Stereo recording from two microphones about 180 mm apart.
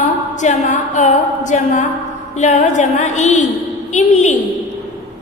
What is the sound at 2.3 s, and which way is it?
A woman's voice, 40° left (ahead or behind).